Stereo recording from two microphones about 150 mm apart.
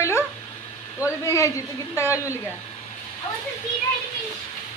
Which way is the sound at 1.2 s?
20° left (ahead or behind).